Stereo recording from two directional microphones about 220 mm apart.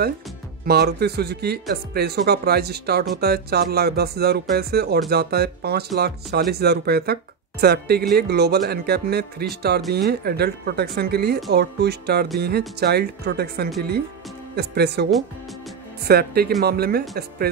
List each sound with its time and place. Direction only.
0.7 s speech: 45° right (ahead or behind)
16.1 s speech: 45° right (ahead or behind)